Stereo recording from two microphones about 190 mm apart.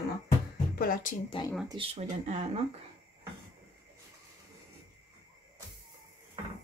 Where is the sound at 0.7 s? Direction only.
50° left (ahead or behind).